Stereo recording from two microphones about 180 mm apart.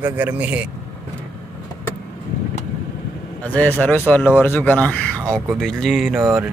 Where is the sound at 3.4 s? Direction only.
10° left (ahead or behind).